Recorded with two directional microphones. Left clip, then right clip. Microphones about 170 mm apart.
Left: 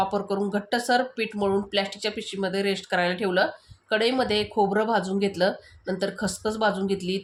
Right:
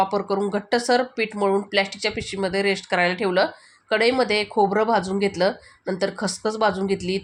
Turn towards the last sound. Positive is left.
turn(degrees=-15)  # may be behind; listen again after turning